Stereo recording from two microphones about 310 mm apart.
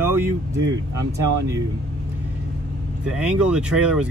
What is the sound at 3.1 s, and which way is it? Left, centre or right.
Speech, centre.